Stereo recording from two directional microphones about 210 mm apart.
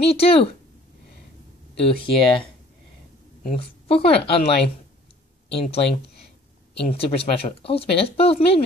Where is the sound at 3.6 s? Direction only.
25° left (ahead or behind).